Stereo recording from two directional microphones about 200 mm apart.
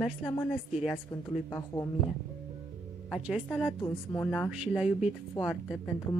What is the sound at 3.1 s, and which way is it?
Speech, 5° right (ahead or behind).